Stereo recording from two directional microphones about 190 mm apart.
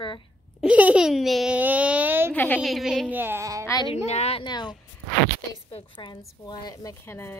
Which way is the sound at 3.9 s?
35° left (ahead or behind).